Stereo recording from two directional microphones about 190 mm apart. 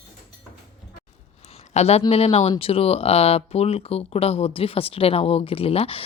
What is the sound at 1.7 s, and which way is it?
Speech, 35° left (ahead or behind).